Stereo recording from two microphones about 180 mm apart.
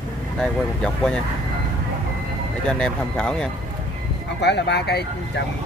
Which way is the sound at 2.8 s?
5° left (ahead or behind).